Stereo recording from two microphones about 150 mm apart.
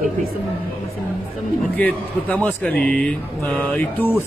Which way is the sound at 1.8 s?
10° left (ahead or behind).